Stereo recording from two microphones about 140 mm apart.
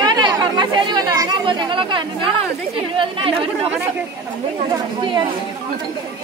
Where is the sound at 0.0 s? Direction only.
30° right (ahead or behind).